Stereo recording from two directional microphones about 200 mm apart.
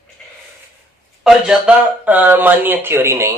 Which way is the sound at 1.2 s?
5° right (ahead or behind).